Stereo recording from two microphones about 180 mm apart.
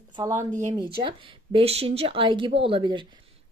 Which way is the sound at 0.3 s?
45° right (ahead or behind).